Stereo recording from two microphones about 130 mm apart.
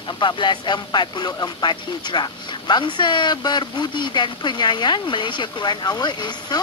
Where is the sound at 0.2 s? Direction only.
35° left (ahead or behind).